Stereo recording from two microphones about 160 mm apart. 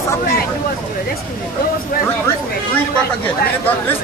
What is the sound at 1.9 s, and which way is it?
Speech, 65° left (ahead or behind).